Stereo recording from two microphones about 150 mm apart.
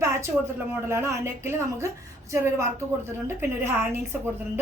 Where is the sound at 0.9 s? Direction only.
15° right (ahead or behind).